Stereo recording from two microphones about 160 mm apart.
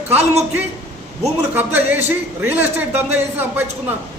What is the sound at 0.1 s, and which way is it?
Speech, 40° right (ahead or behind).